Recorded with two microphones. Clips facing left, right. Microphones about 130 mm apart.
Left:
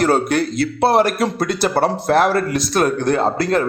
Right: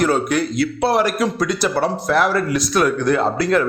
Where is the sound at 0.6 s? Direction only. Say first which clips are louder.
Left 3 dB; 50° left (ahead or behind).